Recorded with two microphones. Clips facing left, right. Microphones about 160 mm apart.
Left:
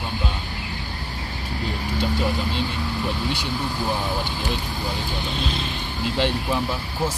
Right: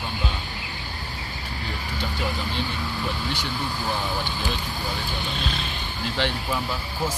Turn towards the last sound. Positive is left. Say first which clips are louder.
# left 4 dB
turn(degrees=15)  # may be behind; listen again after turning